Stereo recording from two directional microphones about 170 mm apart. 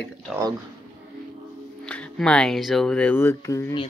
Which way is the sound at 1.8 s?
5° left (ahead or behind).